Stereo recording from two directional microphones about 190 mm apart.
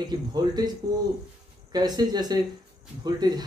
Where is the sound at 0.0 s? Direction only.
20° right (ahead or behind).